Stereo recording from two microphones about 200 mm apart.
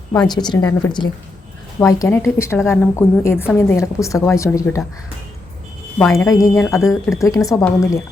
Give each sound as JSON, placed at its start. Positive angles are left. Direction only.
{"t": 0.3, "sound": "a woman's voice", "side_deg": 20}
{"t": 6.0, "sound": "a woman's voice", "side_deg": 15}